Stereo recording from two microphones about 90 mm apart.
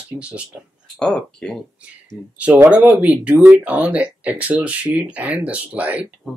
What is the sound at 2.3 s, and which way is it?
Speech, 15° right (ahead or behind).